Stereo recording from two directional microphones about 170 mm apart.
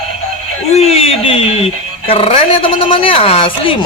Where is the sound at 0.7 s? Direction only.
35° left (ahead or behind).